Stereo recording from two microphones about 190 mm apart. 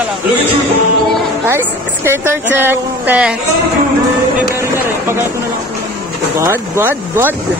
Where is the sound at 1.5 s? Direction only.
10° right (ahead or behind).